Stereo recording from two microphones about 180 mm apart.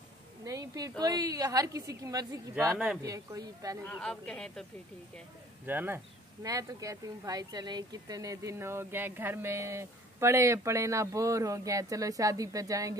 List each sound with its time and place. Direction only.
0.5 s a woman's voice: 20° right (ahead or behind)
3.8 s speech: 5° left (ahead or behind)
5.7 s speech: 10° right (ahead or behind)